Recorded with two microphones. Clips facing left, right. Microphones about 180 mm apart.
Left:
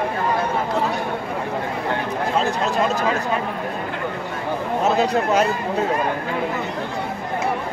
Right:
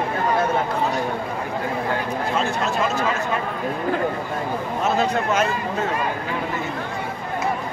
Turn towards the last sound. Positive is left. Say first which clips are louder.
# left 3 dB
turn(degrees=35)  # may be behind; listen again after turning